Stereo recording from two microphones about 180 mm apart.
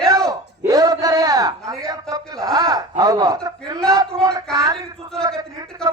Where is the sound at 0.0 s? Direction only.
20° right (ahead or behind).